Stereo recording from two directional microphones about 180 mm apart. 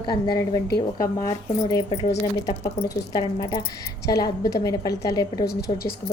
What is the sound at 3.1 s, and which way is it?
Speech, 20° left (ahead or behind).